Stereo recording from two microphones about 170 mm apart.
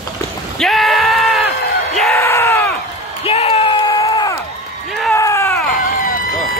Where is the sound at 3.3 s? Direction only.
35° left (ahead or behind).